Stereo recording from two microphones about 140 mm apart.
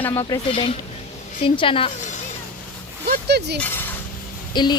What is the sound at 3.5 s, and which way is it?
Speech, 15° left (ahead or behind).